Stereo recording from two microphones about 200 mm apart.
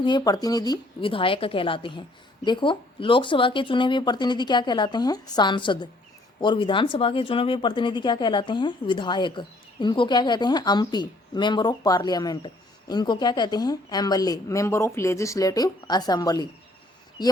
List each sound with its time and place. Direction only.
0.0 s a woman's voice: 20° left (ahead or behind)